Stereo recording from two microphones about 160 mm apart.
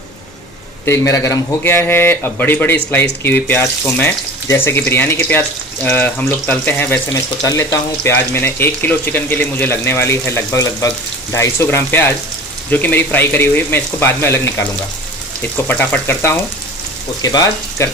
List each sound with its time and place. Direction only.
0.8 s a man's voice: 20° left (ahead or behind)
15.5 s a man's voice: 10° left (ahead or behind)